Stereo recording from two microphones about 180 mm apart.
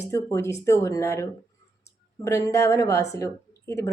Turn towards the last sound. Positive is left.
turn(degrees=15)  # may be behind; listen again after turning